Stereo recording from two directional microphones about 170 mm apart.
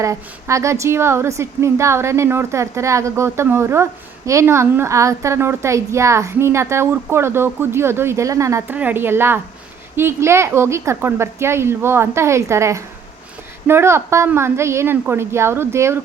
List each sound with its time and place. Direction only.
0.0 s a woman's voice: 15° right (ahead or behind)